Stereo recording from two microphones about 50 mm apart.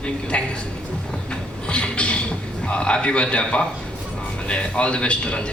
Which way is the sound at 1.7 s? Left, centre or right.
Left.